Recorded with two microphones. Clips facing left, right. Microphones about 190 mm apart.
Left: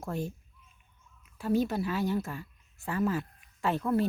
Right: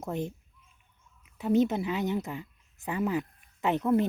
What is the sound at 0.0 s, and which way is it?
A woman's voice, 20° right (ahead or behind).